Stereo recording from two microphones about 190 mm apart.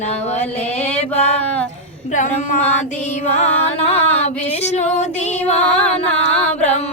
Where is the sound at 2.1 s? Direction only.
45° left (ahead or behind).